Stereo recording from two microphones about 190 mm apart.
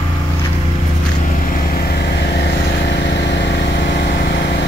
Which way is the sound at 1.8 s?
55° left (ahead or behind).